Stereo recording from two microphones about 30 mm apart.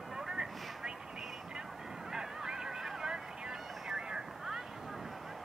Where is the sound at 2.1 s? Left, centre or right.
Right.